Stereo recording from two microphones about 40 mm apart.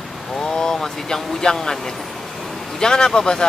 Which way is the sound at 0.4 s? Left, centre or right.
Centre.